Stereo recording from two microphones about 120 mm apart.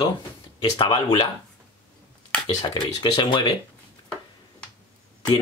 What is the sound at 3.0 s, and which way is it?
Speech, 40° left (ahead or behind).